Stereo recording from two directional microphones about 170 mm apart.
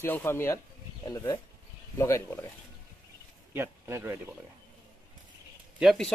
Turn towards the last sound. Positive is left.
turn(degrees=0)  # may be behind; listen again after turning